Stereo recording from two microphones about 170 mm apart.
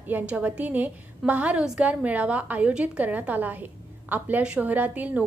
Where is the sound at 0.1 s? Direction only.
10° right (ahead or behind).